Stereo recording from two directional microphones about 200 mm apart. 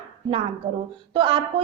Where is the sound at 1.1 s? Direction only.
25° right (ahead or behind).